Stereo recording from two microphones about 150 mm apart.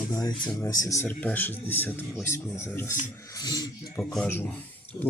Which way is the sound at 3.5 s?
25° left (ahead or behind).